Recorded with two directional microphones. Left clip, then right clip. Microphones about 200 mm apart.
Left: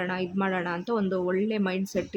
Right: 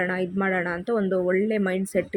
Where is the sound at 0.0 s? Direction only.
5° right (ahead or behind).